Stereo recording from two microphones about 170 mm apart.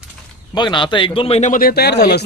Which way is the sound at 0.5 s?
25° left (ahead or behind).